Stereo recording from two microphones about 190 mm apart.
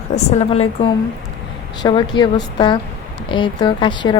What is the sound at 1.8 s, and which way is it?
Speech, 25° left (ahead or behind).